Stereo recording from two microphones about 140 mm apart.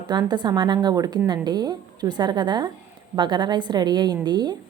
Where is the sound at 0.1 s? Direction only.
30° right (ahead or behind).